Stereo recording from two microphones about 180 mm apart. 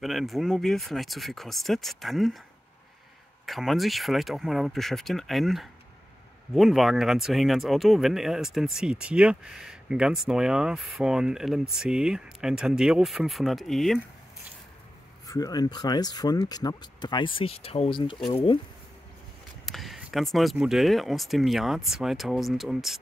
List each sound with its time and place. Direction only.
0.0 s speech: centre (ahead or behind)
3.4 s speech: centre (ahead or behind)
15.2 s speech: 20° left (ahead or behind)
19.6 s a sound: centre (ahead or behind)
20.3 s speech: centre (ahead or behind)